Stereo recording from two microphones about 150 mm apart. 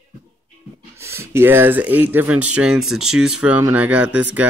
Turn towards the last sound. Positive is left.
turn(degrees=-10)  # may be behind; listen again after turning